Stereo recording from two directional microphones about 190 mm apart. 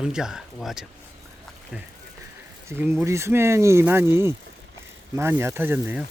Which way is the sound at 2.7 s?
10° right (ahead or behind).